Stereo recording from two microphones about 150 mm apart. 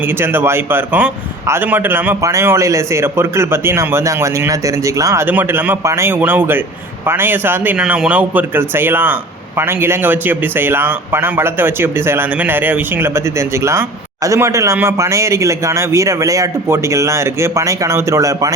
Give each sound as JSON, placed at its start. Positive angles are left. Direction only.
{"t": 0.0, "sound": "speech", "side_deg": -15}